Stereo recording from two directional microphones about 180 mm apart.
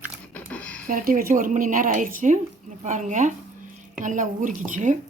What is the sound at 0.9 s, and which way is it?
Speech, 50° right (ahead or behind).